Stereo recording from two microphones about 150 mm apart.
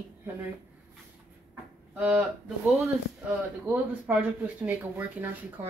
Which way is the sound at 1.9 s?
10° right (ahead or behind).